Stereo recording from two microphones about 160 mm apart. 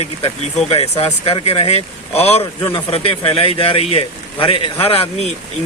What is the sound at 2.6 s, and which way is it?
Speech, 30° left (ahead or behind).